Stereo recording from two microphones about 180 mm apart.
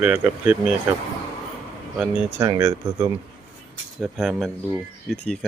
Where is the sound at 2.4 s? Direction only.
20° right (ahead or behind).